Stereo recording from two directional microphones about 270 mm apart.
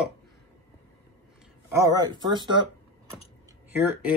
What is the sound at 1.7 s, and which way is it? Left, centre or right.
Speech, centre.